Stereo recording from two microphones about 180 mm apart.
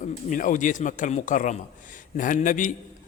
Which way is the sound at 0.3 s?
45° left (ahead or behind).